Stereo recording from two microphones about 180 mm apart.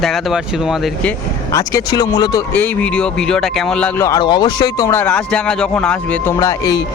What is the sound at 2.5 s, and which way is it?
Speech, 10° left (ahead or behind).